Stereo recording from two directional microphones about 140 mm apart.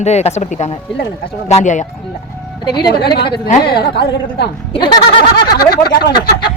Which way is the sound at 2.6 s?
30° left (ahead or behind).